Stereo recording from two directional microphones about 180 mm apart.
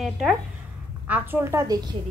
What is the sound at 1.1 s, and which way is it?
Speech, 10° right (ahead or behind).